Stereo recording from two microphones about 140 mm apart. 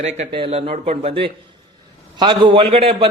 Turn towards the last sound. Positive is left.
turn(degrees=-45)  # may be behind; listen again after turning